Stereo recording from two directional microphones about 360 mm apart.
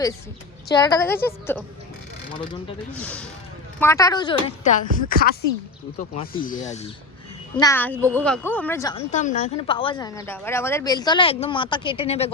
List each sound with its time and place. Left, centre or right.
0.7 s a woman's voice: centre